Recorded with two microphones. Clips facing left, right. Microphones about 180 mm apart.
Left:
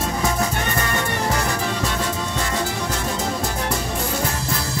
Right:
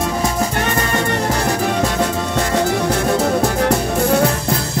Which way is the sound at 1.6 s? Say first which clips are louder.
Right 6 dB; 55° right (ahead or behind).